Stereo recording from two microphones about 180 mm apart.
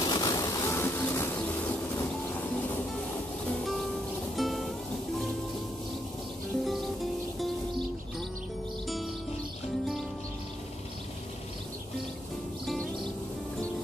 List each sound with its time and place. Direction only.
0.0 s a sound: 20° left (ahead or behind)
4.4 s music: centre (ahead or behind)
8.8 s music: centre (ahead or behind)